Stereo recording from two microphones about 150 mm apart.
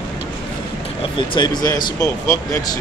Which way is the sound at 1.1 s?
30° left (ahead or behind).